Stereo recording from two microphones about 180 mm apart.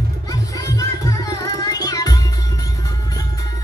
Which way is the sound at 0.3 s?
20° left (ahead or behind).